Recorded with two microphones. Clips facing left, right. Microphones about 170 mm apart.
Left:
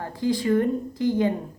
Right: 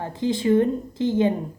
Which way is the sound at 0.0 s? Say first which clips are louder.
Right 1 dB; 20° right (ahead or behind).